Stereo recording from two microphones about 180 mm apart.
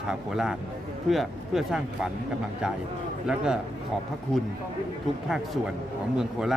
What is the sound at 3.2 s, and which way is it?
Speech, 5° right (ahead or behind).